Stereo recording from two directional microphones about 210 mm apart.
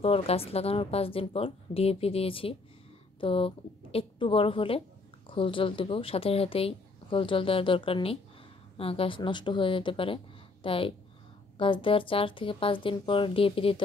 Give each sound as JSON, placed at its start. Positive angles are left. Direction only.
{"t": 0.0, "sound": "speech", "side_deg": 25}